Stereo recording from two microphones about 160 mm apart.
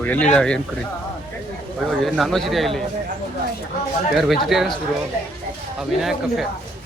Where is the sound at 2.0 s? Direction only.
Centre (ahead or behind).